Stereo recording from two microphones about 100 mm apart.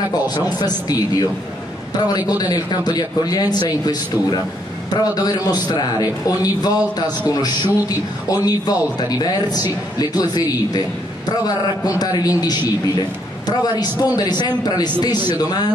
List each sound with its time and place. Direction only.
0.3 s a man's voice: 45° left (ahead or behind)